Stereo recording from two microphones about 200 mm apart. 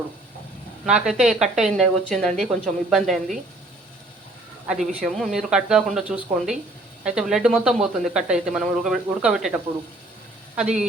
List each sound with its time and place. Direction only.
0.9 s speech: 5° right (ahead or behind)
4.6 s speech: 5° right (ahead or behind)
10.6 s speech: 5° right (ahead or behind)